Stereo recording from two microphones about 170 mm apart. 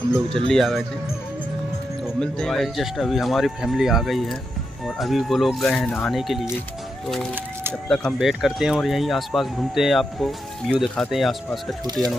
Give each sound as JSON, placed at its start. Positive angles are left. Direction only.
{"t": 0.5, "sound": "speech", "side_deg": 0}
{"t": 2.1, "sound": "speech", "side_deg": 5}
{"t": 7.9, "sound": "speech", "side_deg": 0}
{"t": 11.8, "sound": "speech", "side_deg": -25}